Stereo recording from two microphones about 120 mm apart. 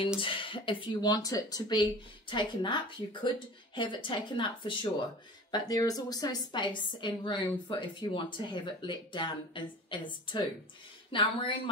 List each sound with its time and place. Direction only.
0.2 s speech: 45° left (ahead or behind)
1.1 s a woman's voice: 30° left (ahead or behind)
5.5 s a woman's voice: 30° left (ahead or behind)